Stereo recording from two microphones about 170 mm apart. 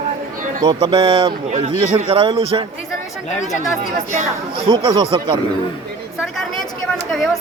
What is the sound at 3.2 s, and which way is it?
Speech, 45° left (ahead or behind).